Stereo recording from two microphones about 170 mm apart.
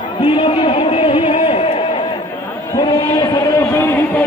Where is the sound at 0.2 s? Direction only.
30° left (ahead or behind).